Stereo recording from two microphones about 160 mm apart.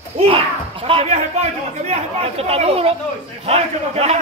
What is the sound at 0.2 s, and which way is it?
Speech, 35° right (ahead or behind).